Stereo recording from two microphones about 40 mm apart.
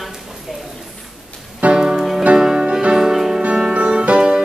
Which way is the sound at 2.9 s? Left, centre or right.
Centre.